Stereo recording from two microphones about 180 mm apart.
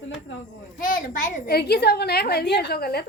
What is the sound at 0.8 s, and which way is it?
A woman's voice, 50° left (ahead or behind).